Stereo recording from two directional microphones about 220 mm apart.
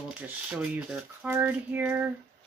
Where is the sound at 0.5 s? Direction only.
5° right (ahead or behind).